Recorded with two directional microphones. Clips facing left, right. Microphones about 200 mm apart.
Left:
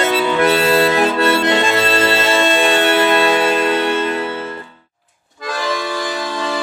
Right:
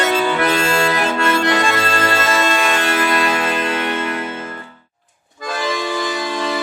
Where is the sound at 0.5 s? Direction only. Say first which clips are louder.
Left 4 dB; 30° left (ahead or behind).